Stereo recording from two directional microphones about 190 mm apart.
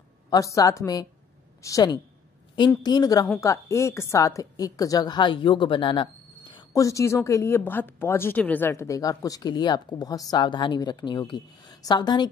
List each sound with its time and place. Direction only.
0.3 s a woman's voice: 20° left (ahead or behind)